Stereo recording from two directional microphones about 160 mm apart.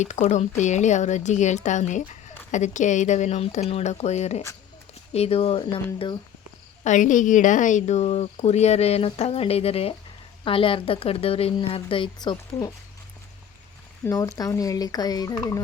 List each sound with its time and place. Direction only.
0.0 s a woman's voice: 50° left (ahead or behind)
6.8 s a woman's voice: 50° left (ahead or behind); by 12.7 s 25° left (ahead or behind)
14.0 s speech: 20° left (ahead or behind)